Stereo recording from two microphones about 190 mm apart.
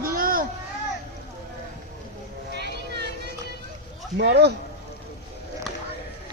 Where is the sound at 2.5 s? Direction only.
60° right (ahead or behind).